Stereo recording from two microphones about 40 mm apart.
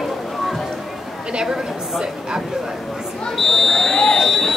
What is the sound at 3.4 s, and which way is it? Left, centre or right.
Buzzer, centre.